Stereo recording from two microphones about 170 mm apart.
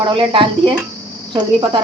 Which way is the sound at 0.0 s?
30° right (ahead or behind).